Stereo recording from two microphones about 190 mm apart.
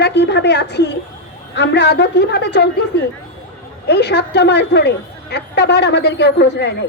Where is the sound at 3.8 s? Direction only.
60° left (ahead or behind).